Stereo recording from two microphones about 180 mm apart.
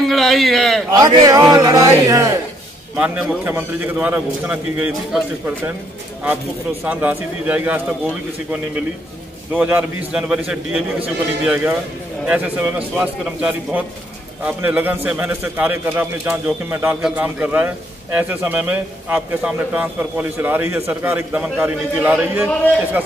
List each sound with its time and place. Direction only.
0.0 s a man's voice: centre (ahead or behind)
0.9 s a man's voice: 20° right (ahead or behind)
3.0 s a man's voice: 5° right (ahead or behind)
6.8 s a man's voice: 10° right (ahead or behind)